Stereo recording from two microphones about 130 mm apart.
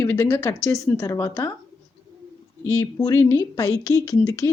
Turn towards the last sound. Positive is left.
turn(degrees=25)  # may be behind; listen again after turning